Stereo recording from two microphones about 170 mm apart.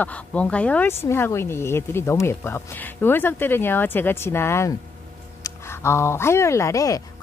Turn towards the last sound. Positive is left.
turn(degrees=20)  # may be behind; listen again after turning